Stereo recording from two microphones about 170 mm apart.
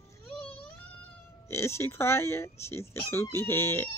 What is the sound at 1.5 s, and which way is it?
Speech, 15° left (ahead or behind).